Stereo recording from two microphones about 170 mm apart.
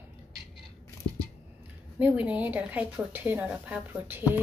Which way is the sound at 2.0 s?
10° right (ahead or behind).